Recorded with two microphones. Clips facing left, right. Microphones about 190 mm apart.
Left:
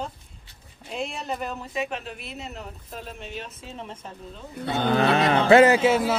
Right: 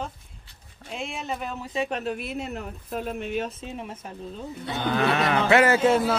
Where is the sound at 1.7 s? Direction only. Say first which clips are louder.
Right 5 dB; 40° right (ahead or behind); by 3.4 s 55° right (ahead or behind).